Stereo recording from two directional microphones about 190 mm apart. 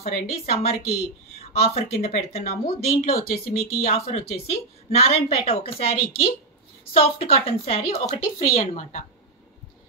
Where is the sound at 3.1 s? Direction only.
50° left (ahead or behind).